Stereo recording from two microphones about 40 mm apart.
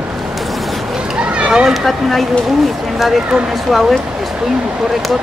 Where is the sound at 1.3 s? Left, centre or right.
Right.